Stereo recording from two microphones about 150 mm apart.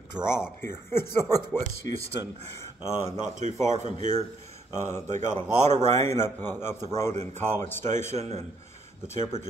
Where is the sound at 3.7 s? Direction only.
50° right (ahead or behind).